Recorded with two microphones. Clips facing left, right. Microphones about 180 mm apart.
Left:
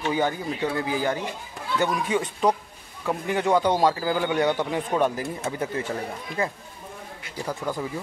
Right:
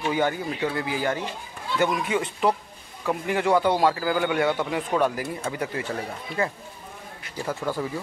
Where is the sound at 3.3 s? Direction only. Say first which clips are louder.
Even; 20° left (ahead or behind).